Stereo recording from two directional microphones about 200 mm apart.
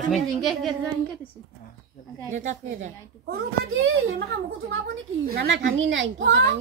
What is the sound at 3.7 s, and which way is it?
A woman's voice, 70° right (ahead or behind).